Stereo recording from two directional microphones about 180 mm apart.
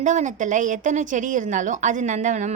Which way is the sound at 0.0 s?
40° right (ahead or behind).